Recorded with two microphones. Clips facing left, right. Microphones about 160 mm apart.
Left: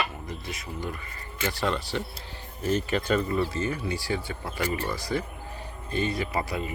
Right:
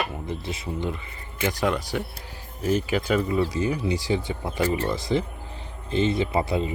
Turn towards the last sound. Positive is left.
turn(degrees=-25)  # may be behind; listen again after turning